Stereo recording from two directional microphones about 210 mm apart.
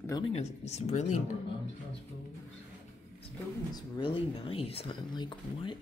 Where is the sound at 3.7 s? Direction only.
25° left (ahead or behind).